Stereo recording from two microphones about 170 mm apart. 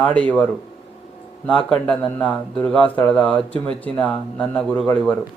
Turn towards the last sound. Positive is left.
turn(degrees=5)  # may be behind; listen again after turning